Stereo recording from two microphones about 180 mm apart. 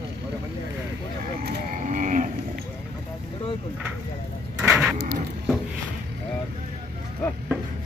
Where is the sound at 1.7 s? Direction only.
45° right (ahead or behind).